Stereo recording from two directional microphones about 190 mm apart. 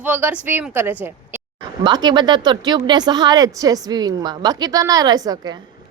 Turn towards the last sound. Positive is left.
turn(degrees=-20)  # may be behind; listen again after turning